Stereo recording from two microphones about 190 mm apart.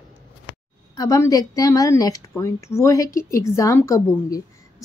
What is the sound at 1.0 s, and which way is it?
Speech, 15° left (ahead or behind).